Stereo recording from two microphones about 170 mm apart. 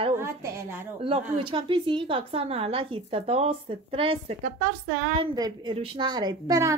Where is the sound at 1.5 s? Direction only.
30° right (ahead or behind).